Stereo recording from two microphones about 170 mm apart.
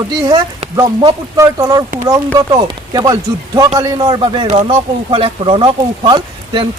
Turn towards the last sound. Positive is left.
turn(degrees=-25)  # may be behind; listen again after turning